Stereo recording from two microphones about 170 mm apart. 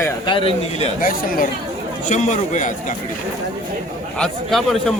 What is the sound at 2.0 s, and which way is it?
Speech, 45° left (ahead or behind).